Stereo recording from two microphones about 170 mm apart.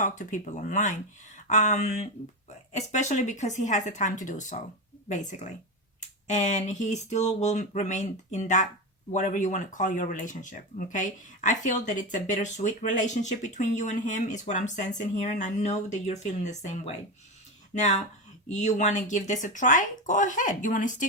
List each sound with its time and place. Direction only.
0.0 s speech: 50° left (ahead or behind)